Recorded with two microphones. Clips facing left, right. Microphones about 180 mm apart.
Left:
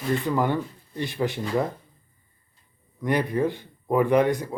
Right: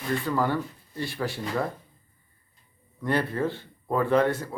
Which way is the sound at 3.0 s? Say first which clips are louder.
Left 3 dB; 15° left (ahead or behind).